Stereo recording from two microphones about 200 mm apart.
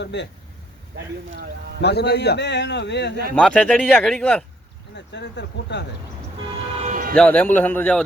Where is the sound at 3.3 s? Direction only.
5° left (ahead or behind).